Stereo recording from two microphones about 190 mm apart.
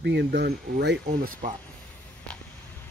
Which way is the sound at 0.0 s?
60° right (ahead or behind).